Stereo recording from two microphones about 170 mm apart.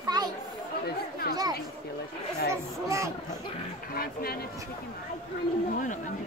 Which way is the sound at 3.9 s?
65° left (ahead or behind).